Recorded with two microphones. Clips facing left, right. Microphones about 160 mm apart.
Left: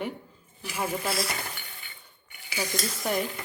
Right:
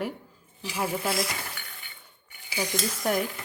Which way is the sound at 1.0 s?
15° right (ahead or behind).